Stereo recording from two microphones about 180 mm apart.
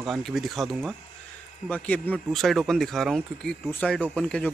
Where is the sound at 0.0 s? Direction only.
Centre (ahead or behind).